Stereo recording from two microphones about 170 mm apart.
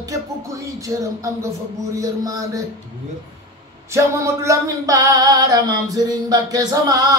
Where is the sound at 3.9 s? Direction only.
15° right (ahead or behind).